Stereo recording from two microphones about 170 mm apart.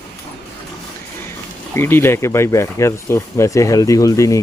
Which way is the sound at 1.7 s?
15° left (ahead or behind).